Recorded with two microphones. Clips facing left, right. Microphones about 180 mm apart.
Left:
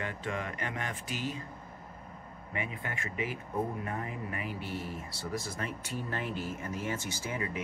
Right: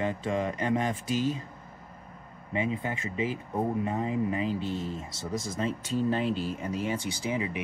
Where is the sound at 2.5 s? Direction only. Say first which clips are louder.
Right 8 dB; 25° right (ahead or behind).